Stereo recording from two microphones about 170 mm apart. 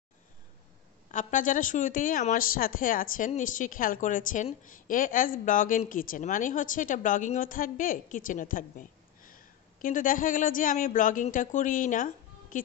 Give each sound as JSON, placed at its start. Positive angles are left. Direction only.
{"t": 1.1, "sound": "speech", "side_deg": 50}